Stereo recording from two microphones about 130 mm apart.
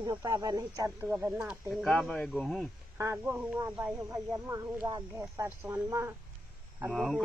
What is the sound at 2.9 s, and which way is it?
Speech, 15° right (ahead or behind).